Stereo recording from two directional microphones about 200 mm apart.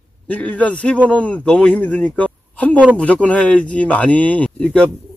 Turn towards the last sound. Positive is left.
turn(degrees=5)  # may be behind; listen again after turning